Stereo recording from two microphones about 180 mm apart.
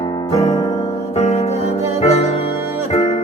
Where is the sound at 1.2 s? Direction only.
35° left (ahead or behind).